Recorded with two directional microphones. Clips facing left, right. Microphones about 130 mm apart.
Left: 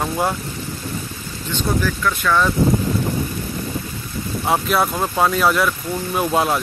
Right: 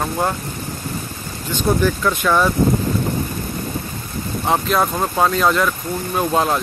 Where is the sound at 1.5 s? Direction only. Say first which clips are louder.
Right 4 dB; 15° right (ahead or behind).